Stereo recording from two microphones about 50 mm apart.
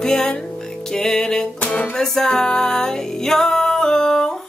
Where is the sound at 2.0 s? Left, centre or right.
Centre.